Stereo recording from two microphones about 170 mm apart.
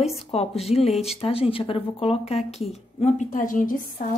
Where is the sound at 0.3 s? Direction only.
35° left (ahead or behind).